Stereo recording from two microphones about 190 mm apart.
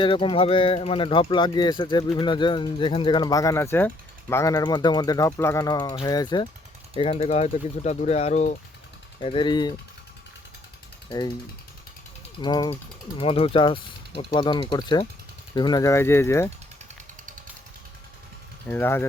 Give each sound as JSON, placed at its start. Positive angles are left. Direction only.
{"t": 0.0, "sound": "speech", "side_deg": 25}
{"t": 9.2, "sound": "speech", "side_deg": 25}
{"t": 12.4, "sound": "speech", "side_deg": 20}
{"t": 18.7, "sound": "speech", "side_deg": 10}